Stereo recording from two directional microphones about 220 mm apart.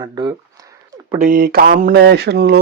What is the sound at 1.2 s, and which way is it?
Speech, 40° right (ahead or behind).